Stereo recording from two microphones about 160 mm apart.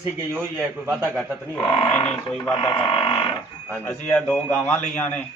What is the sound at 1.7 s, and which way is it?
Speech, 30° left (ahead or behind).